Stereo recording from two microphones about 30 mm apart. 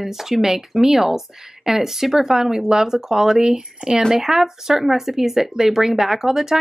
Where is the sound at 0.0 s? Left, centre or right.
Centre.